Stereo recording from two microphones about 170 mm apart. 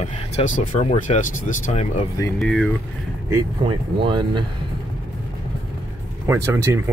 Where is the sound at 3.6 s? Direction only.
30° right (ahead or behind).